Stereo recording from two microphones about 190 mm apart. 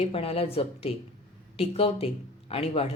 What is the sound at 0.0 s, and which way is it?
A woman's voice, 30° left (ahead or behind).